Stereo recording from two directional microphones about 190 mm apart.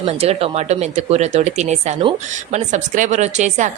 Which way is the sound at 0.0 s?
30° right (ahead or behind).